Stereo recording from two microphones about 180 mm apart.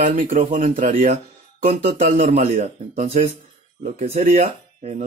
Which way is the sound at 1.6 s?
35° right (ahead or behind).